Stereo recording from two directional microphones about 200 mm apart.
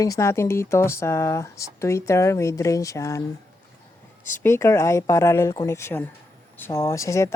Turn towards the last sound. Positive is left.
turn(degrees=15)  # may be behind; listen again after turning